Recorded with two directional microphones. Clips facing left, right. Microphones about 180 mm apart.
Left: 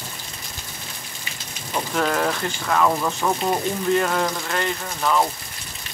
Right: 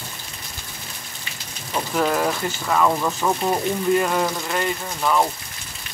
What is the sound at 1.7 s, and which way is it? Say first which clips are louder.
Speech: right 1 dB; 5° right (ahead or behind).